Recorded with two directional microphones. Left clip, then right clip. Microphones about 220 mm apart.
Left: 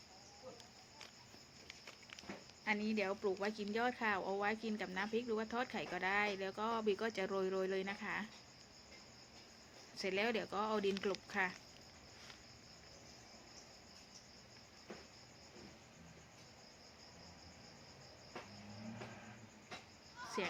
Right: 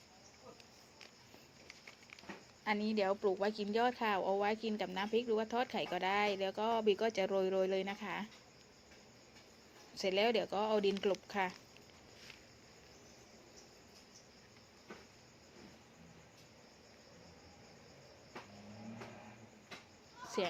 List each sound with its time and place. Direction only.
2.6 s speech: 20° right (ahead or behind)
9.9 s speech: 10° right (ahead or behind)